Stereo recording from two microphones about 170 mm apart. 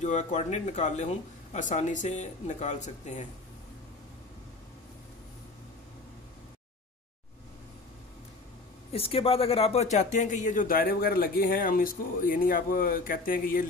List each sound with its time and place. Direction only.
0.0 s speech: 45° left (ahead or behind)
8.9 s speech: 35° left (ahead or behind); by 13.7 s 55° left (ahead or behind)